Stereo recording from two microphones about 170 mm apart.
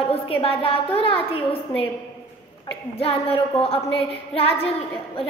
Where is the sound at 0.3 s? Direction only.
35° left (ahead or behind).